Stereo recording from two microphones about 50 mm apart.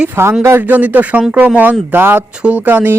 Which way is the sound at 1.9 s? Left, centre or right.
Right.